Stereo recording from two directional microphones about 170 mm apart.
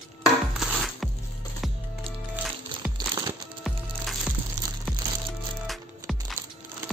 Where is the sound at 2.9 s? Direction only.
25° right (ahead or behind).